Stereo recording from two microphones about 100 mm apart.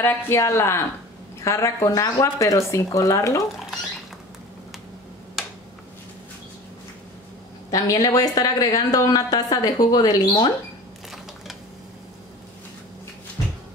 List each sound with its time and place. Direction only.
0.0 s a woman's voice: 25° left (ahead or behind)
7.7 s a woman's voice: 35° left (ahead or behind)
10.2 s speech: 50° left (ahead or behind)